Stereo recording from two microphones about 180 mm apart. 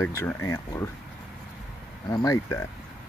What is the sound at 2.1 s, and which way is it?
Speech, 20° left (ahead or behind).